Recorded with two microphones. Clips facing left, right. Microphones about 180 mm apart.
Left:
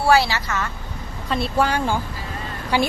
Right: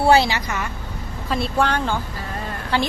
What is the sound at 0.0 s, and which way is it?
Speech, 20° right (ahead or behind).